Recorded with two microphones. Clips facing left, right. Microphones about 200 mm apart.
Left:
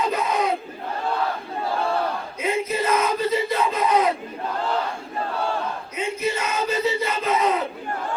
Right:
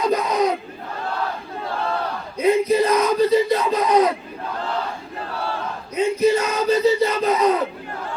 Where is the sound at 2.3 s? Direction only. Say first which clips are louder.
Right 10 dB; 35° right (ahead or behind).